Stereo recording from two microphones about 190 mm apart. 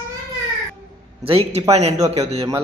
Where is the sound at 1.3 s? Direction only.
30° right (ahead or behind).